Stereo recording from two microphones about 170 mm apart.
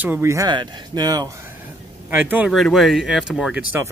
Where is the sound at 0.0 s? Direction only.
15° right (ahead or behind).